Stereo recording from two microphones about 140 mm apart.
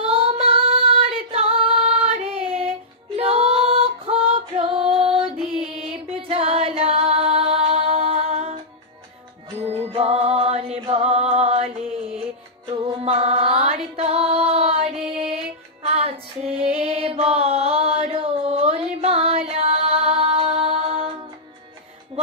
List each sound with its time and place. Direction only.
0.0 s female singing: 45° right (ahead or behind)
9.7 s music: 45° right (ahead or behind)